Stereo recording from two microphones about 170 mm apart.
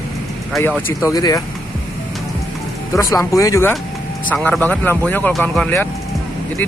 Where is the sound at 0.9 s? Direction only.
20° left (ahead or behind).